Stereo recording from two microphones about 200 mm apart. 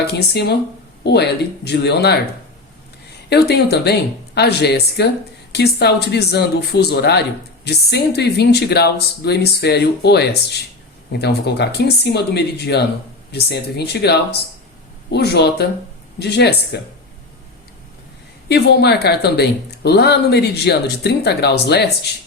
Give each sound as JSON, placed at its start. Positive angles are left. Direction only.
{"t": 0.1, "sound": "speech", "side_deg": 55}
{"t": 3.2, "sound": "speech", "side_deg": 55}
{"t": 18.4, "sound": "speech", "side_deg": 55}